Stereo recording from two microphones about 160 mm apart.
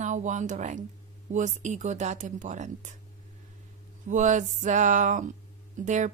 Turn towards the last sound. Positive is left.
turn(degrees=-50)  # may be behind; listen again after turning